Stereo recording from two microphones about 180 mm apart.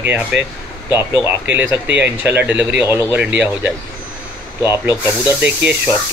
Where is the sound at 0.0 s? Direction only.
10° right (ahead or behind).